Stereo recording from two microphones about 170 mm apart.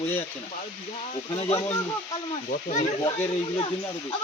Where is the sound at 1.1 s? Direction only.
35° left (ahead or behind).